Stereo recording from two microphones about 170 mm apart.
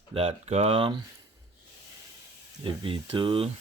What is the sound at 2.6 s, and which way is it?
Speech, 30° right (ahead or behind).